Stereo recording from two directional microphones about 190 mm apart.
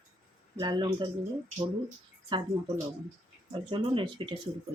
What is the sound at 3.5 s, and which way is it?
Speech, 25° right (ahead or behind).